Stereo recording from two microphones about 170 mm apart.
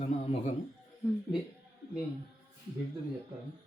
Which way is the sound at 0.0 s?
35° left (ahead or behind).